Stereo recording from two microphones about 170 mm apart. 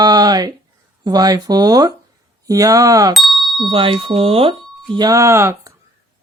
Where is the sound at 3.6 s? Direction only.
30° right (ahead or behind).